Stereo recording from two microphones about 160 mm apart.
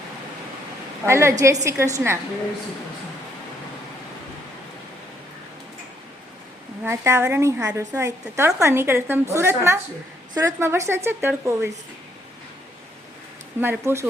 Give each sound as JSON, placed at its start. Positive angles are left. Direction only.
{"t": 1.0, "sound": "a woman's voice", "side_deg": -15}
{"t": 6.8, "sound": "a woman's voice", "side_deg": -15}
{"t": 13.6, "sound": "a woman's voice", "side_deg": -15}